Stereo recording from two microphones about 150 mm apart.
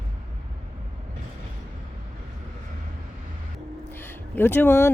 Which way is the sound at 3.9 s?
15° left (ahead or behind).